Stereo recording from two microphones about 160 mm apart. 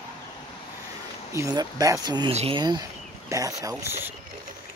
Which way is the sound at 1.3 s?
20° right (ahead or behind).